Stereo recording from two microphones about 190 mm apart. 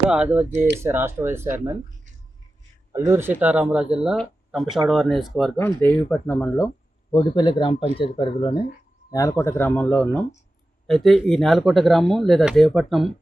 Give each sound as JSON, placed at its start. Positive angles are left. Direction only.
{"t": 0.1, "sound": "speech", "side_deg": -5}
{"t": 3.1, "sound": "speech", "side_deg": -10}
{"t": 5.5, "sound": "speech", "side_deg": 10}
{"t": 7.1, "sound": "speech", "side_deg": 25}